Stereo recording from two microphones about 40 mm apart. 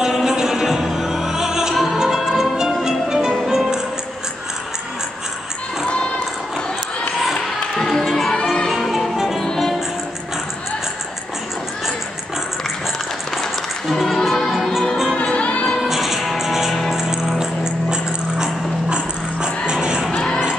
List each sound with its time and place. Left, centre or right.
0.0 s music: centre
7.3 s a sound: centre
8.0 s music: centre
9.4 s music: centre
13.8 s music: centre
15.1 s music: left
15.9 s music: centre
16.9 s dog: centre